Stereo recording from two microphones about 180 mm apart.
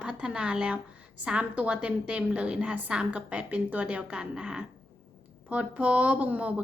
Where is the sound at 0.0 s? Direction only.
5° right (ahead or behind).